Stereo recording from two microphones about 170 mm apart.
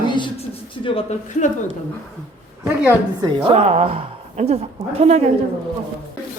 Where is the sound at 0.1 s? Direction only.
30° left (ahead or behind).